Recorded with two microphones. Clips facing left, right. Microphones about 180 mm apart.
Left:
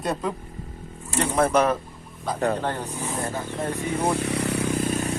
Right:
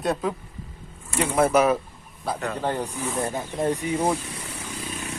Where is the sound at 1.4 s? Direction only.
5° right (ahead or behind).